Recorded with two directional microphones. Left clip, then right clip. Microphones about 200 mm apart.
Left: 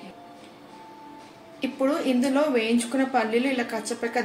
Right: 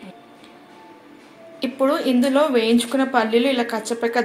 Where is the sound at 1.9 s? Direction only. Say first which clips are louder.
Right 5 dB; 20° right (ahead or behind).